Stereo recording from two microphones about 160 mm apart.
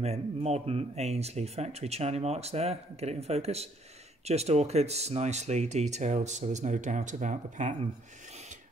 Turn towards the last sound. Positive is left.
turn(degrees=-50)  # may be behind; listen again after turning